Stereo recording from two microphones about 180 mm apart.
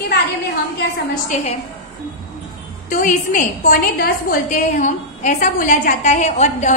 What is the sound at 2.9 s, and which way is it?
A woman's voice, 45° left (ahead or behind).